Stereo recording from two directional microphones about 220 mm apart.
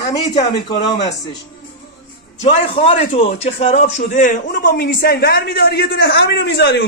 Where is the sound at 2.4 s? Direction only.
25° left (ahead or behind); by 6.8 s 50° left (ahead or behind).